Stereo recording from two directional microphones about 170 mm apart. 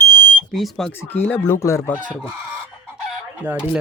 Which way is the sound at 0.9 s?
10° left (ahead or behind).